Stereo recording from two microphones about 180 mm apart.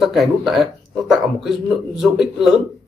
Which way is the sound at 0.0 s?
Centre (ahead or behind).